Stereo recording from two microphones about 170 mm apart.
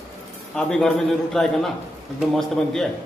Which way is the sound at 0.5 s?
5° left (ahead or behind).